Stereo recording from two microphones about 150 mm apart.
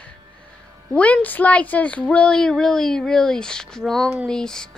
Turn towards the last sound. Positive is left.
turn(degrees=5)  # may be behind; listen again after turning